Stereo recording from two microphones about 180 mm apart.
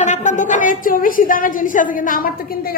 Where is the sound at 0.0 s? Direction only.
40° left (ahead or behind).